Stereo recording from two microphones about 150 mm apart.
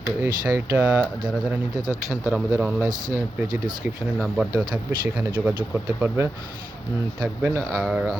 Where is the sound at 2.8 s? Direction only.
25° right (ahead or behind).